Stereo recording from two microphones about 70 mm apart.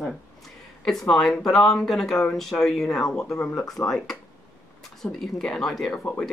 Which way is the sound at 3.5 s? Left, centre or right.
Left.